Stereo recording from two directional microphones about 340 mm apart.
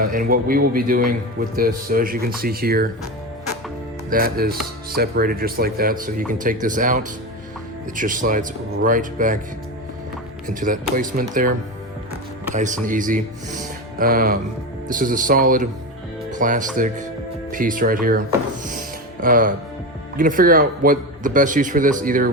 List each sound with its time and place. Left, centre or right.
0.0 s a man's voice: right
4.1 s a man's voice: right
10.4 s a man's voice: right
12.5 s a man's voice: right